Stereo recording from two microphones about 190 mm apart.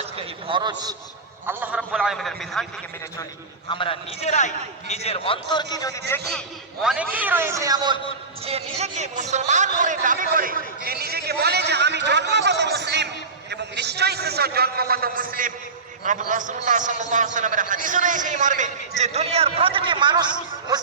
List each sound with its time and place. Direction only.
0.0 s a man's voice: 30° right (ahead or behind)
1.5 s a man's voice: 10° right (ahead or behind)
3.7 s a man's voice: 30° left (ahead or behind)
6.8 s a man's voice: 5° right (ahead or behind)
8.4 s a man's voice: 35° right (ahead or behind)